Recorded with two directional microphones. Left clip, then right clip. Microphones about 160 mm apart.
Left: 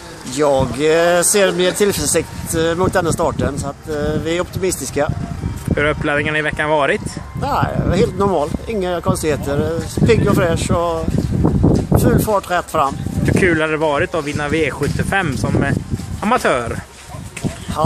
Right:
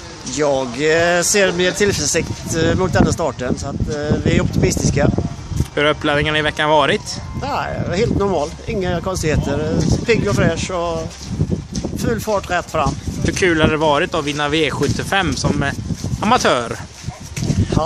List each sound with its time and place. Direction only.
0.4 s speech: centre (ahead or behind)
5.8 s speech: 25° right (ahead or behind)
7.4 s speech: 5° left (ahead or behind)
12.0 s speech: centre (ahead or behind)
13.2 s speech: 25° right (ahead or behind)